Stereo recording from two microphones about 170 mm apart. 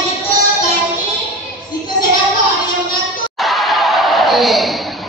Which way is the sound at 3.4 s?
Centre (ahead or behind).